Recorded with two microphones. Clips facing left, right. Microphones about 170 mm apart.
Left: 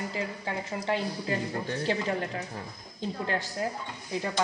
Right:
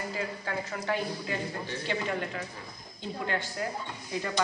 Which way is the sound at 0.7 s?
30° left (ahead or behind).